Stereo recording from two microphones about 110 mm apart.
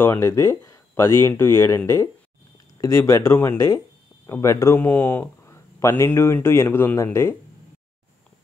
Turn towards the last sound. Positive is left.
turn(degrees=25)  # may be behind; listen again after turning